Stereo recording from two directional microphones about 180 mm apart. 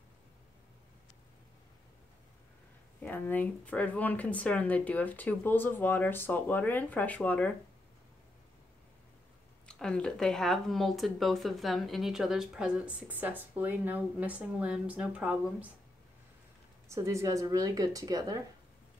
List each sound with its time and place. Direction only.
3.0 s speech: 10° left (ahead or behind)
9.7 s speech: 5° left (ahead or behind)
16.9 s speech: 15° right (ahead or behind)